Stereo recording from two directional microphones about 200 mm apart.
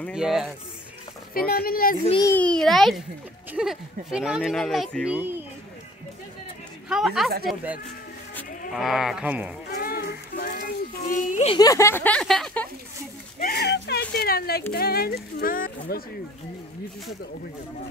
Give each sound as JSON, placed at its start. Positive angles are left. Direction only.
{"t": 0.0, "sound": "speech", "side_deg": -5}
{"t": 1.3, "sound": "speech", "side_deg": 50}
{"t": 2.2, "sound": "speech", "side_deg": 5}
{"t": 6.9, "sound": "speech", "side_deg": 0}
{"t": 7.2, "sound": "speech", "side_deg": -50}
{"t": 8.7, "sound": "speech", "side_deg": 0}
{"t": 9.7, "sound": "child singing", "side_deg": 50}
{"t": 11.5, "sound": "speech", "side_deg": 15}
{"t": 13.4, "sound": "speech", "side_deg": 50}